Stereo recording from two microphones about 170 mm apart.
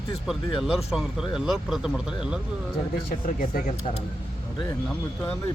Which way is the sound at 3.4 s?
50° left (ahead or behind).